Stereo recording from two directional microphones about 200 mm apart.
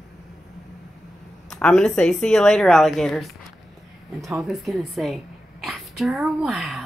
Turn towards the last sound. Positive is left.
turn(degrees=0)  # may be behind; listen again after turning